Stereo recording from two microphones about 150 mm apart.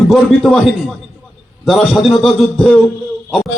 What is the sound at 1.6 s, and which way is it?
Speech, centre (ahead or behind).